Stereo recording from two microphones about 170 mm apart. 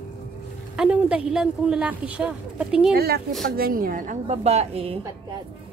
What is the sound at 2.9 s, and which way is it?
Speech, 65° right (ahead or behind).